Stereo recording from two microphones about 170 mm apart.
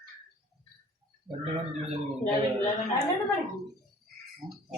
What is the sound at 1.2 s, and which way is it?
Speech, 40° right (ahead or behind).